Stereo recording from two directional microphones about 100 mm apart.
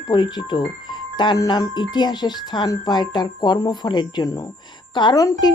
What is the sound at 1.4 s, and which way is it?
Speech, 40° left (ahead or behind).